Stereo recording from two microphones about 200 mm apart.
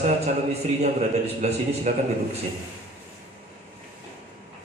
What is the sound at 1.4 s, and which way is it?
Speech, 35° right (ahead or behind).